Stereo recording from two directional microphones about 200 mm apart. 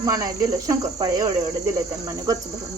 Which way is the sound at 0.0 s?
15° right (ahead or behind).